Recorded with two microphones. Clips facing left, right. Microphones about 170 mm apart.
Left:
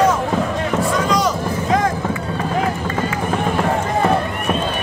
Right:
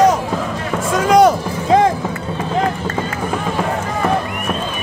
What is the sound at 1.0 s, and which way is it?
Music, 55° right (ahead or behind).